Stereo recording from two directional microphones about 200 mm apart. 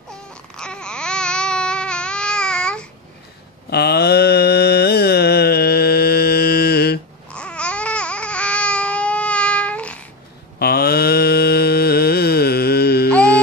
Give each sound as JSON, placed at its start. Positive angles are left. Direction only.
{"t": 0.1, "sound": "babbling", "side_deg": 5}
{"t": 3.7, "sound": "mantra", "side_deg": 55}
{"t": 7.3, "sound": "babbling", "side_deg": 5}
{"t": 10.6, "sound": "mantra", "side_deg": 50}